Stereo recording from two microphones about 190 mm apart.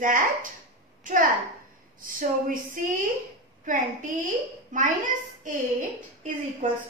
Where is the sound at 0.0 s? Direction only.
45° right (ahead or behind).